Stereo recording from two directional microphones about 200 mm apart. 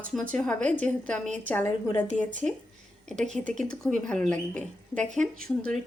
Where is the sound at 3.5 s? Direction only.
5° left (ahead or behind).